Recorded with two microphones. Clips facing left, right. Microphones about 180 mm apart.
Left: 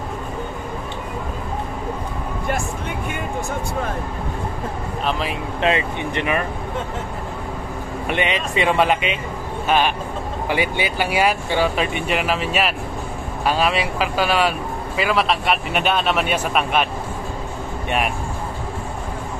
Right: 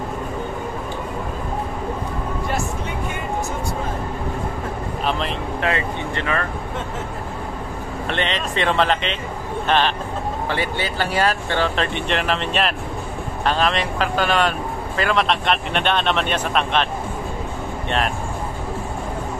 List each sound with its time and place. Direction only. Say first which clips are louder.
5.6 s speech: left 4 dB; 20° left (ahead or behind)
8.1 s speech: left 2 dB; 10° left (ahead or behind)